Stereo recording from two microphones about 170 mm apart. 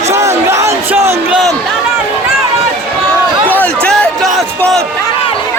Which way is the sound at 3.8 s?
5° left (ahead or behind).